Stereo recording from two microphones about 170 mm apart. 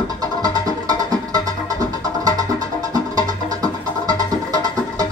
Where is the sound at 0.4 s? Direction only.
20° right (ahead or behind).